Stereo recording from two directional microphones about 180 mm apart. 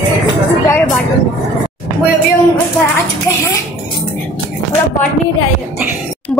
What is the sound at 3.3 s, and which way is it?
Speech, 15° left (ahead or behind).